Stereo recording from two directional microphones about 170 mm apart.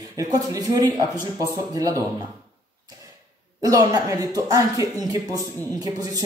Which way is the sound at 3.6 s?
20° right (ahead or behind).